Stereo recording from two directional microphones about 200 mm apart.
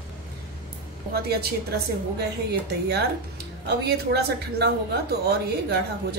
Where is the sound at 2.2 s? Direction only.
55° right (ahead or behind).